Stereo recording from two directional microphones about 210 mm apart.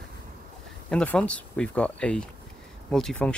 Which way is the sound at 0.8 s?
5° left (ahead or behind).